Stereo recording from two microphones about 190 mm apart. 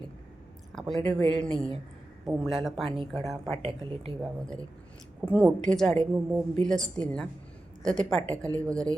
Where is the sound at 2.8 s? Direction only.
30° right (ahead or behind).